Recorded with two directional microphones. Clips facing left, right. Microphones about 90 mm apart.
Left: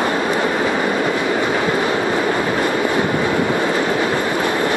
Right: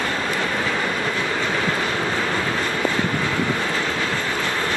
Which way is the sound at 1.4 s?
15° left (ahead or behind).